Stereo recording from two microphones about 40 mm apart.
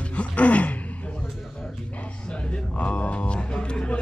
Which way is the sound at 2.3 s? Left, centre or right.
Left.